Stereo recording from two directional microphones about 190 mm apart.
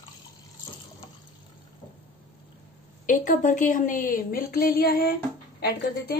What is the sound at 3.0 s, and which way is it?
A woman's voice, 45° left (ahead or behind).